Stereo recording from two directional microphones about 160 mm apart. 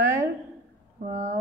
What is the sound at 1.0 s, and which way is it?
Speech, 55° right (ahead or behind).